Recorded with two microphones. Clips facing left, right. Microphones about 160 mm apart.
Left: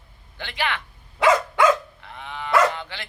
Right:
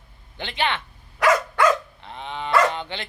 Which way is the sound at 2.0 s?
25° right (ahead or behind).